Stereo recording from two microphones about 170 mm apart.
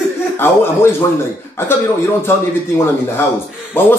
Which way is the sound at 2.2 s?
15° left (ahead or behind).